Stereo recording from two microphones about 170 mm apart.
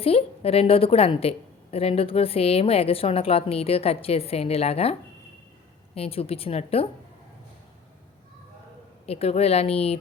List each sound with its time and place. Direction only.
0.0 s a woman's voice: 35° left (ahead or behind)
9.0 s a woman's voice: 35° left (ahead or behind)